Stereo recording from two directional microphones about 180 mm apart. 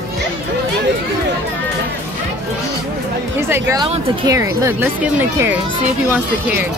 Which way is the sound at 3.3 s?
15° right (ahead or behind).